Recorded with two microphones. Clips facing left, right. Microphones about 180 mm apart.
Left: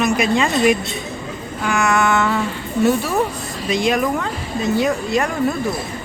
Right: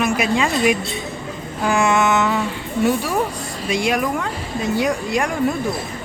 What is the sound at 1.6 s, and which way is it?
Speech, 30° right (ahead or behind).